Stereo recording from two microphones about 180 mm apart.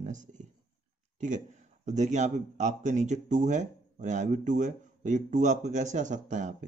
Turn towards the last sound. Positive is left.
turn(degrees=-45)  # may be behind; listen again after turning